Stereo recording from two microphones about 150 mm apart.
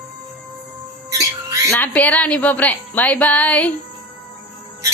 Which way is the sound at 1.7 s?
10° left (ahead or behind).